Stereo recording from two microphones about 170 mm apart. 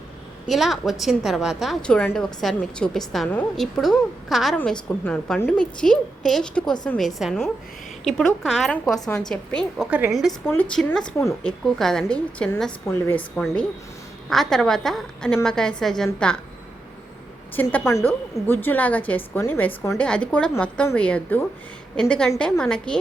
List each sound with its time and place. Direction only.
0.4 s a woman's voice: centre (ahead or behind)
9.0 s a woman's voice: 20° left (ahead or behind)
9.3 s a woman's voice: 5° left (ahead or behind)
10.4 s a woman's voice: 10° left (ahead or behind)
17.5 s a woman's voice: 10° left (ahead or behind)